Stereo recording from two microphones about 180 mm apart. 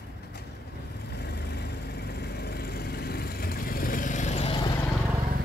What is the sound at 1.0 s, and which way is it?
Vehicle, 65° left (ahead or behind).